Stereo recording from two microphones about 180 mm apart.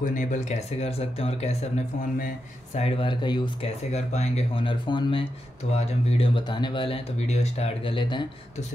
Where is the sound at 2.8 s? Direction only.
30° left (ahead or behind).